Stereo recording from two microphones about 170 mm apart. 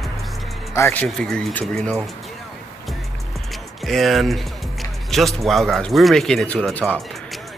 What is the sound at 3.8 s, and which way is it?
Speech, centre (ahead or behind).